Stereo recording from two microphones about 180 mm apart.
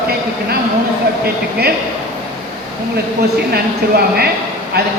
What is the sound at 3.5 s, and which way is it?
Speech, 60° right (ahead or behind).